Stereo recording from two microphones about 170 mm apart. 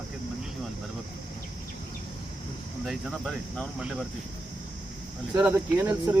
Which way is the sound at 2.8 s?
Centre (ahead or behind).